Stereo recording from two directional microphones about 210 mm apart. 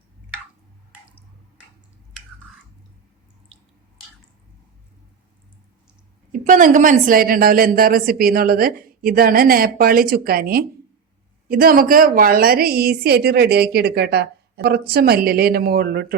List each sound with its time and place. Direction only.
6.3 s a woman's voice: 35° right (ahead or behind)